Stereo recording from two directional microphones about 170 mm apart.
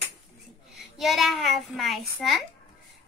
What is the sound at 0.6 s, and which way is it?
A child's voice, centre (ahead or behind).